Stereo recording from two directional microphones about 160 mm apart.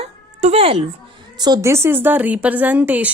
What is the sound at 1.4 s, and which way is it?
A woman's voice, 25° right (ahead or behind).